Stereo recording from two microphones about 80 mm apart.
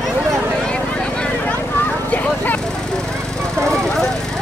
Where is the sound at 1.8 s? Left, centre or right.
Left.